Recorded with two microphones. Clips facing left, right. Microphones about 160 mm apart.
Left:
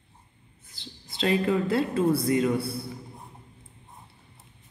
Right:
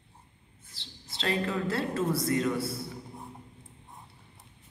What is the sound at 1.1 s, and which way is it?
A woman's voice, 15° left (ahead or behind).